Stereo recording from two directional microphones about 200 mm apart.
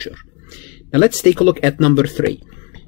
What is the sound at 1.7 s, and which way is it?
Speech, 40° left (ahead or behind).